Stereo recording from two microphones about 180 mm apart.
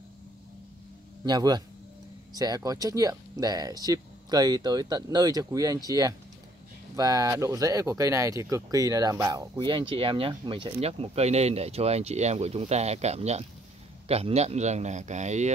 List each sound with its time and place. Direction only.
1.2 s a man's voice: 25° right (ahead or behind); by 15.5 s 40° right (ahead or behind)